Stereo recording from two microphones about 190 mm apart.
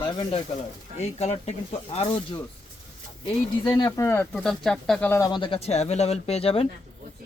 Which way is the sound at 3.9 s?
15° left (ahead or behind).